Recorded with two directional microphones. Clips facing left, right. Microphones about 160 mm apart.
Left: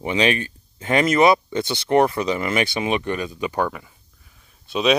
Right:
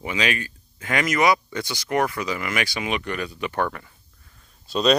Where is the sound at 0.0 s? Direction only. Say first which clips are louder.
Left 5 dB; 25° left (ahead or behind).